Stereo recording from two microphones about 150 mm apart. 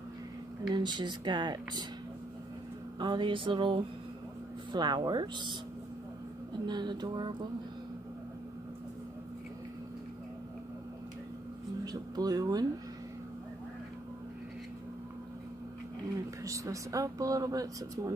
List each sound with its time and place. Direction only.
0.7 s speech: 30° right (ahead or behind)
3.0 s a sound: 30° right (ahead or behind)
4.7 s speech: 30° right (ahead or behind)
6.6 s speech: 30° right (ahead or behind)
11.8 s speech: 25° right (ahead or behind)
16.4 s speech: 20° right (ahead or behind)